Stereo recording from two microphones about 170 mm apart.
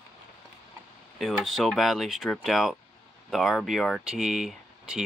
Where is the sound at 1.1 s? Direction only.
Centre (ahead or behind).